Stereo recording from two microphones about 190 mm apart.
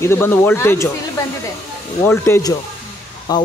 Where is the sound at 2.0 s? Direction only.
10° left (ahead or behind).